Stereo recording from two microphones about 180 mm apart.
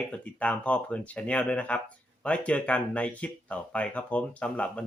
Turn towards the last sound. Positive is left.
turn(degrees=5)  # may be behind; listen again after turning